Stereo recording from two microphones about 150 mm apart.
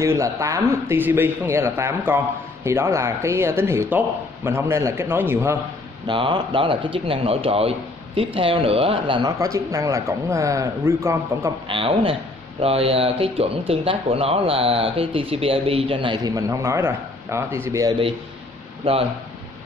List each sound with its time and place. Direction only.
0.0 s a man's voice: 20° right (ahead or behind)
6.0 s a man's voice: 35° right (ahead or behind); by 11.5 s 20° right (ahead or behind)
11.6 s a man's voice: 35° right (ahead or behind); by 17.9 s 20° right (ahead or behind)